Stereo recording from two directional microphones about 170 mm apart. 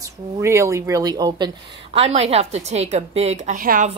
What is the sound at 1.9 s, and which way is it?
A woman's voice, 35° right (ahead or behind).